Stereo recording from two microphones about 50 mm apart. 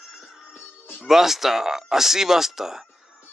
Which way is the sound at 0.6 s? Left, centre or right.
Left.